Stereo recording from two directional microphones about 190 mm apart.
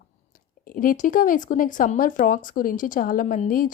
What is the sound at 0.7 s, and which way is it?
Speech, 45° left (ahead or behind).